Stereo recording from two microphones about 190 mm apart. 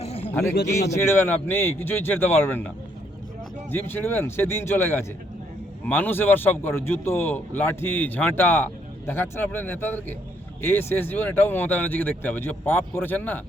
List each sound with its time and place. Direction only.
0.0 s a sound: 30° left (ahead or behind)
0.5 s speech: 60° left (ahead or behind)
0.9 s a man's voice: 10° left (ahead or behind)
3.7 s a man's voice: 10° left (ahead or behind)